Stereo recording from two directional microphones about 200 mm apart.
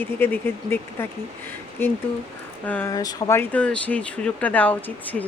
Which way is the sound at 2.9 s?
20° left (ahead or behind).